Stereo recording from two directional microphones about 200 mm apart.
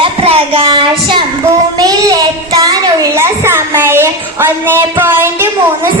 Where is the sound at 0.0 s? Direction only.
25° right (ahead or behind); by 5.5 s 10° right (ahead or behind).